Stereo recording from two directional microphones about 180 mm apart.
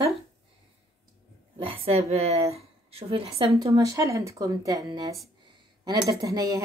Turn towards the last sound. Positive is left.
turn(degrees=-15)  # may be behind; listen again after turning